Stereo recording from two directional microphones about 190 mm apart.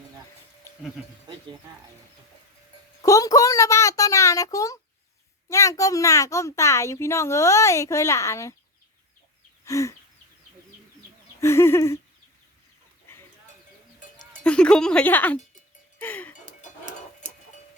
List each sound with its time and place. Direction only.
3.0 s a child's voice: 20° left (ahead or behind)
9.6 s a sound: 15° left (ahead or behind)
11.3 s a child's voice: 15° left (ahead or behind)
14.4 s speech: 5° left (ahead or behind)
16.0 s music: 10° left (ahead or behind)